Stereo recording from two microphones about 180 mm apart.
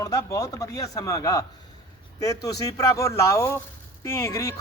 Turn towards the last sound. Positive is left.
turn(degrees=15)  # may be behind; listen again after turning